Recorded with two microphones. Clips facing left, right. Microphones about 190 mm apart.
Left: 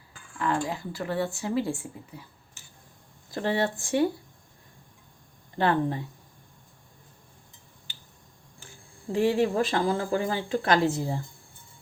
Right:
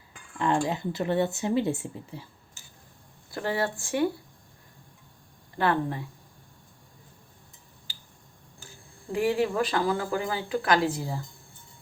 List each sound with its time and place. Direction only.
0.3 s speech: 25° right (ahead or behind)
3.3 s speech: 25° left (ahead or behind)
5.5 s speech: 25° left (ahead or behind)
9.1 s speech: 30° left (ahead or behind)